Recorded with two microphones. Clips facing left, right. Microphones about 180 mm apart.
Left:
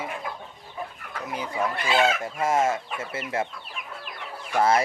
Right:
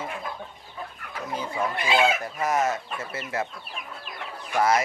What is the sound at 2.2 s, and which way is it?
Chicken, 25° left (ahead or behind).